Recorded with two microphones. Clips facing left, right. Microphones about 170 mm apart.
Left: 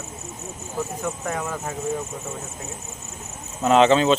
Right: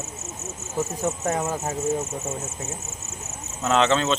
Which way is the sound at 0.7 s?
20° right (ahead or behind).